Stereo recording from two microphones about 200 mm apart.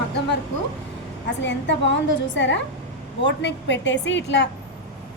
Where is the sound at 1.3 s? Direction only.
60° left (ahead or behind).